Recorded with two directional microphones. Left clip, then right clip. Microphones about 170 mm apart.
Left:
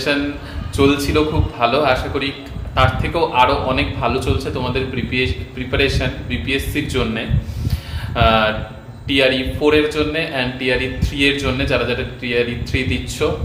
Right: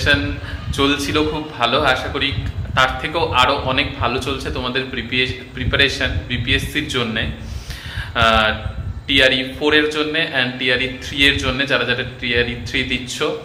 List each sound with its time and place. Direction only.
0.8 s a man's voice: 5° left (ahead or behind)